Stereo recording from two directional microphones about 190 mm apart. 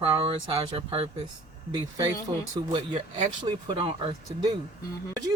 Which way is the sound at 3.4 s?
25° right (ahead or behind).